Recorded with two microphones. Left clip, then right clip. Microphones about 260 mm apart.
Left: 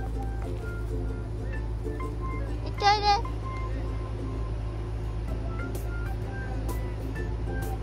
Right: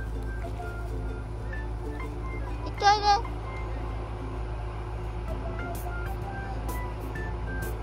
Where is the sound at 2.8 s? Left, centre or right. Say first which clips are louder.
Right 1 dB; centre.